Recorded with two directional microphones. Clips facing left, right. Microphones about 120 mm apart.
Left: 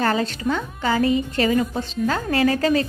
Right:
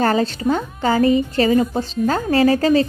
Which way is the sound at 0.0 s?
40° right (ahead or behind).